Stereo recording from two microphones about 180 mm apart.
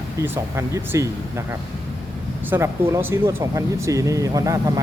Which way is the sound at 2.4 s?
15° right (ahead or behind).